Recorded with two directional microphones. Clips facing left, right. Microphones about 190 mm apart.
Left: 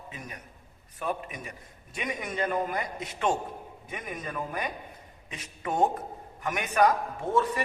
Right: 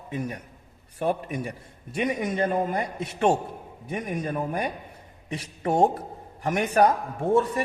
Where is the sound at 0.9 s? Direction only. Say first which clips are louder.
Right 7 dB; 30° right (ahead or behind).